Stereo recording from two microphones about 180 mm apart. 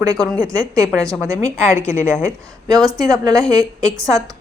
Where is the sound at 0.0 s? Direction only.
20° right (ahead or behind).